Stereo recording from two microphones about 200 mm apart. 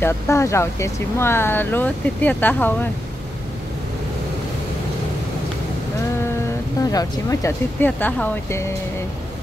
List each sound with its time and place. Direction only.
0.0 s speech: 15° left (ahead or behind)
6.8 s speech: 20° left (ahead or behind)